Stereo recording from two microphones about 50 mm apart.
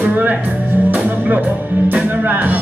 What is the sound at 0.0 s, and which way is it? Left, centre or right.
Music, right.